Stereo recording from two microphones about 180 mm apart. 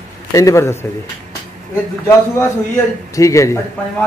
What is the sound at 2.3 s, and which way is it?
A man's voice, 15° left (ahead or behind).